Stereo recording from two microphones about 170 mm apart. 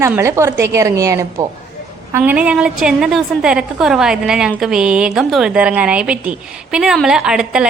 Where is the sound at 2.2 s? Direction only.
5° right (ahead or behind).